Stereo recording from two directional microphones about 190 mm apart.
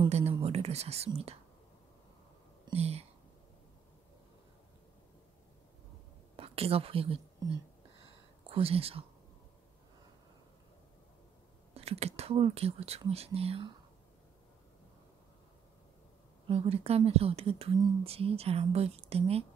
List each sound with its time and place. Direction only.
0.1 s speech: 30° right (ahead or behind)
2.6 s speech: 35° right (ahead or behind)
6.3 s a woman's voice: 30° right (ahead or behind)
8.0 s whispering: 30° right (ahead or behind)
11.7 s a woman's voice: 30° right (ahead or behind)
16.4 s a woman's voice: 35° right (ahead or behind)